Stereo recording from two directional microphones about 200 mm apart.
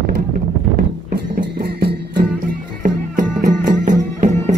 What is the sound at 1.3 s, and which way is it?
Music, 50° right (ahead or behind).